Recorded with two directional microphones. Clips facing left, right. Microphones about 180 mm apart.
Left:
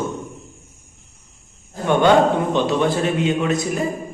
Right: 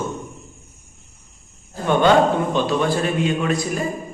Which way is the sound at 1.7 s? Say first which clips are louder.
Left 1 dB; 15° left (ahead or behind).